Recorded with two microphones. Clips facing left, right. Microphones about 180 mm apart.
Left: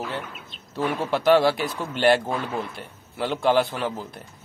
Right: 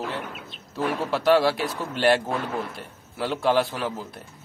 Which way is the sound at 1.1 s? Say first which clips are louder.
Left 2 dB; centre (ahead or behind).